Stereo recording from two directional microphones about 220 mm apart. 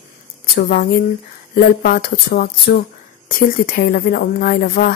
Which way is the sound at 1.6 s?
40° left (ahead or behind).